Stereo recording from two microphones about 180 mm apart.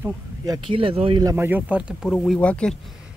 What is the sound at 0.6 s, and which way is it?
Speech, 30° right (ahead or behind).